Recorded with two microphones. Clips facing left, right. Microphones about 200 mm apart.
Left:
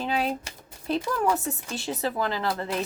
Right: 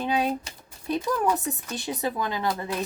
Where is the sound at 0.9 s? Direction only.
15° right (ahead or behind).